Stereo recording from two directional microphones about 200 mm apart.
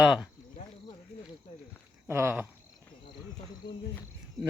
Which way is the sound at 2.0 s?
10° right (ahead or behind).